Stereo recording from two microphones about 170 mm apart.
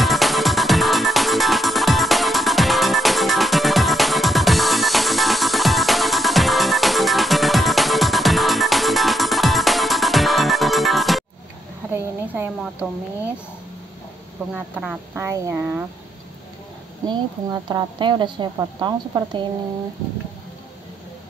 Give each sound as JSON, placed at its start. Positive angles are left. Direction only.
{"t": 0.0, "sound": "music", "side_deg": 0}
{"t": 11.9, "sound": "a sound", "side_deg": -10}
{"t": 14.5, "sound": "speech", "side_deg": -5}
{"t": 15.1, "sound": "speech", "side_deg": -15}
{"t": 17.1, "sound": "a woman's voice", "side_deg": -25}